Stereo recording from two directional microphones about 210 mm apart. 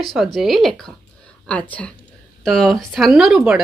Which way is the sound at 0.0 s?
Centre (ahead or behind).